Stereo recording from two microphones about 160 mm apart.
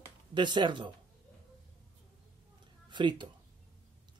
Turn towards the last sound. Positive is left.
turn(degrees=-30)  # may be behind; listen again after turning